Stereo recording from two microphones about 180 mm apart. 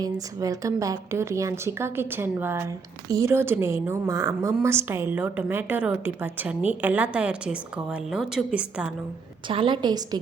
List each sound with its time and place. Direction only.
0.0 s a woman's voice: 20° right (ahead or behind)
9.5 s a woman's voice: 30° right (ahead or behind)